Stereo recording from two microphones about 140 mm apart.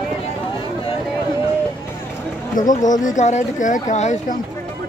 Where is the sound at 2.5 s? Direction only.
65° left (ahead or behind).